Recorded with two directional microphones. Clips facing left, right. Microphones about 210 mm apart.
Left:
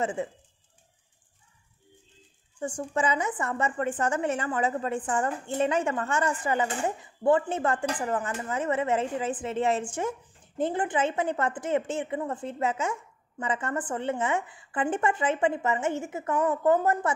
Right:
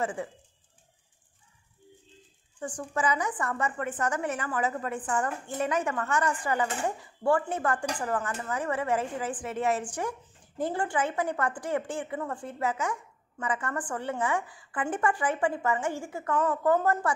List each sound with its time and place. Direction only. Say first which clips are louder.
0.0 s a woman's voice: left 2 dB; 25° left (ahead or behind)
2.6 s a woman's voice: left 2 dB; 25° left (ahead or behind)